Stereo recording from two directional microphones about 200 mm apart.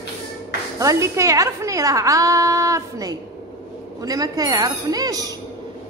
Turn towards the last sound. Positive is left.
turn(degrees=-20)  # may be behind; listen again after turning